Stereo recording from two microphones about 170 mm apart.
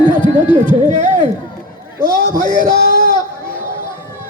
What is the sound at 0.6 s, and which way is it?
Speech, 45° right (ahead or behind).